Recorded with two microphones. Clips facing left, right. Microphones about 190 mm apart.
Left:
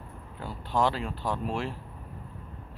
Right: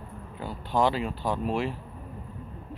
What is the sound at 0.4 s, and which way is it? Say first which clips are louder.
Speech: right 2 dB; centre (ahead or behind).